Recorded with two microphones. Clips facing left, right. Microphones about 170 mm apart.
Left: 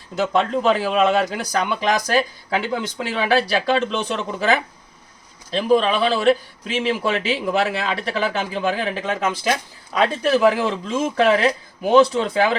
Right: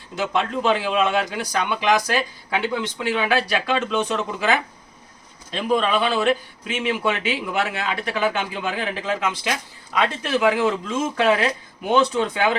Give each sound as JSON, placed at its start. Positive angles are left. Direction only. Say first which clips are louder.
{"t": 0.2, "sound": "a man's voice", "louder": "left 3 dB", "side_deg": 40}